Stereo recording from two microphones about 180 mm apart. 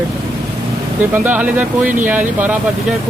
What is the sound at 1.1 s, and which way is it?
Speech, 10° right (ahead or behind).